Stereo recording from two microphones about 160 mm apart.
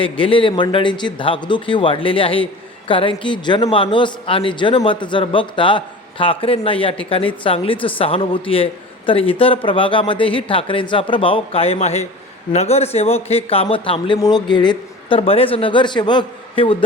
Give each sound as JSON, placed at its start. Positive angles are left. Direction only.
{"t": 0.0, "sound": "a man's voice", "side_deg": 35}